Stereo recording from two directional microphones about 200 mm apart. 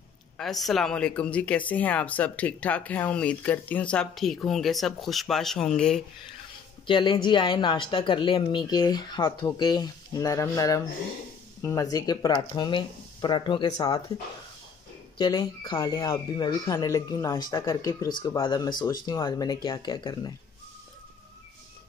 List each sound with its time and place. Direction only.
0.4 s speech: centre (ahead or behind)
6.9 s speech: 25° left (ahead or behind)
15.1 s speech: 20° left (ahead or behind)